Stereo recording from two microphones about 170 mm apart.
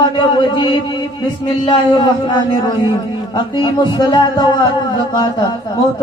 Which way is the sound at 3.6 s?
25° left (ahead or behind).